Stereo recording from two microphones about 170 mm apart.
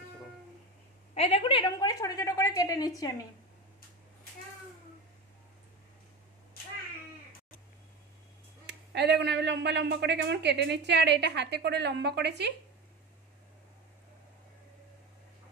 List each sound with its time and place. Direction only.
1.1 s a woman's voice: 35° left (ahead or behind)
8.6 s speech: 90° right